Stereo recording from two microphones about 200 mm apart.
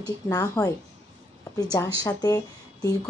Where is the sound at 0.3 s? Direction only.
20° left (ahead or behind).